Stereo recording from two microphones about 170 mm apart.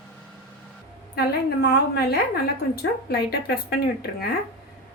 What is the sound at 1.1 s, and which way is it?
A woman's voice, 70° left (ahead or behind).